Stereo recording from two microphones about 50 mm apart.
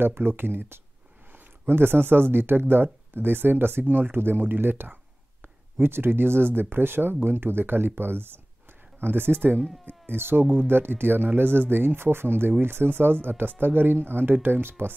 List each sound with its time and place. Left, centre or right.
0.0 s speech: right